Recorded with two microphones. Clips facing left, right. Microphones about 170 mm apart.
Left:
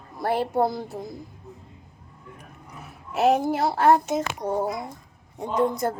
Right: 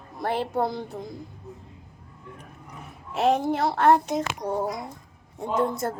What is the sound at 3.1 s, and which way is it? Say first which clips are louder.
Speech: left 2 dB; 5° left (ahead or behind).